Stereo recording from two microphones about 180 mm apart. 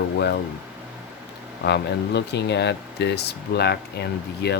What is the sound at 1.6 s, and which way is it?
Speech, 70° left (ahead or behind).